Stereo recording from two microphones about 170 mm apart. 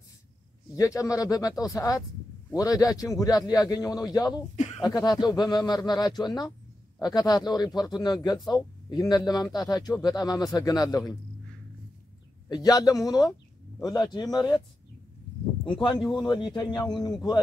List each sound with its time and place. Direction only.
0.7 s speech: 20° left (ahead or behind)
4.6 s a sound: 40° left (ahead or behind)
4.8 s speech: 25° left (ahead or behind)
12.4 s speech: 25° left (ahead or behind)
16.0 s speech: centre (ahead or behind)
16.3 s speech: 25° left (ahead or behind)